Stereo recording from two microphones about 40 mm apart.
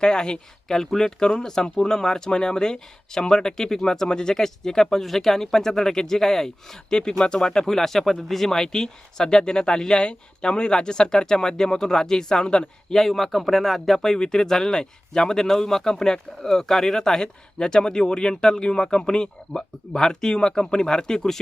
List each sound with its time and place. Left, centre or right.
0.0 s speech: centre
13.0 s speech: centre